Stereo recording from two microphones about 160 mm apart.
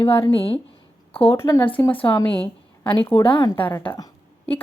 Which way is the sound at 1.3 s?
15° left (ahead or behind).